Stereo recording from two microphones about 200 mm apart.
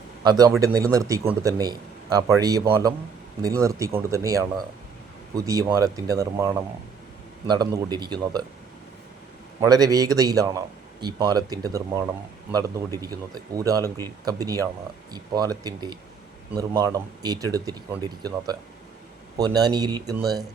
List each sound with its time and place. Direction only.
0.3 s a man's voice: 20° right (ahead or behind)
9.6 s a man's voice: 20° right (ahead or behind)